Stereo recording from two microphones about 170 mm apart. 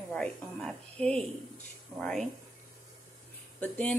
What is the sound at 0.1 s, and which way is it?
Speech, 5° left (ahead or behind).